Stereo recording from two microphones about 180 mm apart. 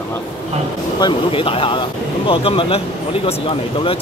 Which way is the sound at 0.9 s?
25° left (ahead or behind).